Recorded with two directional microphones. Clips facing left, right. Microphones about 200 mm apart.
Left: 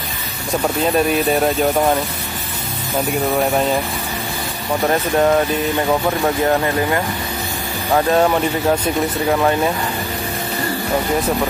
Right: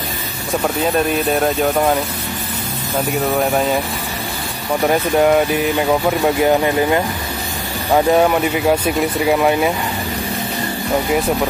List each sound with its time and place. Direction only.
0.9 s speech: centre (ahead or behind)
3.3 s speech: centre (ahead or behind)
4.8 s speech: 10° right (ahead or behind)